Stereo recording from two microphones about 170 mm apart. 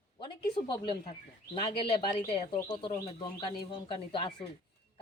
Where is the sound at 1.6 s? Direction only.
25° left (ahead or behind).